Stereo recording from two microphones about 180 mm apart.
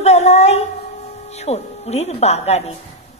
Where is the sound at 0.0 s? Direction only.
35° left (ahead or behind).